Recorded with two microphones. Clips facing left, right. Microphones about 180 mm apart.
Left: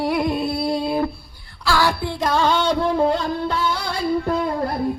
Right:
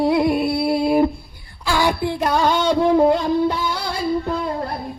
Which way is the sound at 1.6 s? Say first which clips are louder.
Even; 15° right (ahead or behind).